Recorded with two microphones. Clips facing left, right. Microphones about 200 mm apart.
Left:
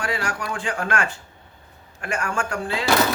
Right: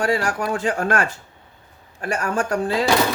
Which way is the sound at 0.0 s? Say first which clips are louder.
Right 6 dB; 35° right (ahead or behind).